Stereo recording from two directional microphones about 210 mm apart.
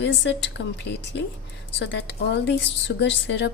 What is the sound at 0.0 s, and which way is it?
A woman's voice, 60° left (ahead or behind).